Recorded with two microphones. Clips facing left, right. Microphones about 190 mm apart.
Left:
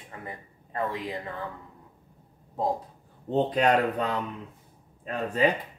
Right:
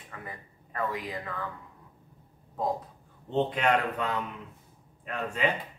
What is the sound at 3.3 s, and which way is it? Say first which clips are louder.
Speech: left 3 dB; 40° left (ahead or behind).